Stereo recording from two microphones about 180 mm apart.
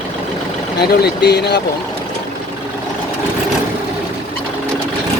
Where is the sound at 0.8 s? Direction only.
65° left (ahead or behind).